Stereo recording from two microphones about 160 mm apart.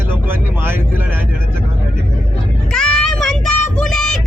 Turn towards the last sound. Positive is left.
turn(degrees=5)  # may be behind; listen again after turning